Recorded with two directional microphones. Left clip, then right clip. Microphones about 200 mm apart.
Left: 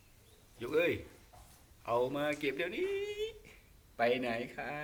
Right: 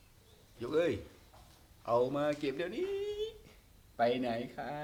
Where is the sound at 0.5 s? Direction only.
25° right (ahead or behind).